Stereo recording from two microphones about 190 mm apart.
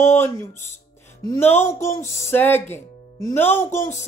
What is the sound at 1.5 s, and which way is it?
Speech, 15° left (ahead or behind).